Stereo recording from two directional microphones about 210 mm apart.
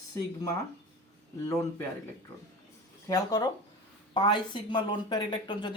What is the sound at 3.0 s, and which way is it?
Speech, 20° left (ahead or behind).